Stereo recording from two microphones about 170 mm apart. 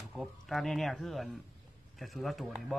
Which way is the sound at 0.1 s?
Centre (ahead or behind).